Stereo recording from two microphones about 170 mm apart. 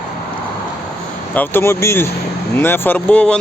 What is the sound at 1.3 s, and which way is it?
Speech, 15° left (ahead or behind).